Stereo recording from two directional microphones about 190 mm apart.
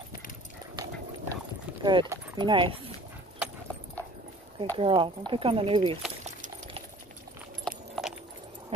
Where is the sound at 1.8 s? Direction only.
25° right (ahead or behind).